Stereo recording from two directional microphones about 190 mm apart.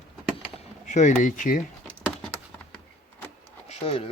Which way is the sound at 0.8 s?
40° left (ahead or behind).